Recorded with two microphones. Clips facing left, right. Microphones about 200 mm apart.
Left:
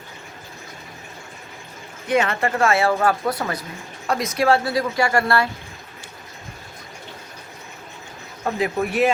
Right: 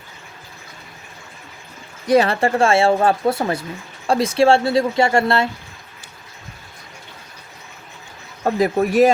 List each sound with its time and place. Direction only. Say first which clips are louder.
2.0 s speech: right 5 dB; 35° right (ahead or behind)
8.5 s speech: right 6 dB; 40° right (ahead or behind)